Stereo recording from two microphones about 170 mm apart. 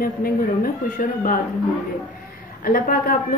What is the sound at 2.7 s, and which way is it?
Speech, 55° left (ahead or behind).